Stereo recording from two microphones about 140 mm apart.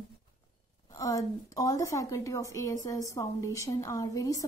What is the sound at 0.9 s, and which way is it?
A woman's voice, 25° left (ahead or behind).